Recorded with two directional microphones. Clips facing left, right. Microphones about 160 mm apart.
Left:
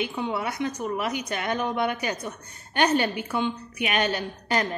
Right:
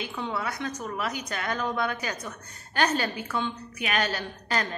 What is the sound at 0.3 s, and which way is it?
Speech, 20° left (ahead or behind).